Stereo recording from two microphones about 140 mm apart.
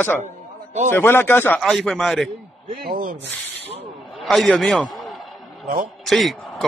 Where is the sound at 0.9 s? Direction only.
15° left (ahead or behind).